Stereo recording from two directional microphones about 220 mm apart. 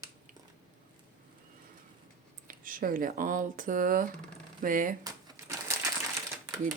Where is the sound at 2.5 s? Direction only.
40° right (ahead or behind).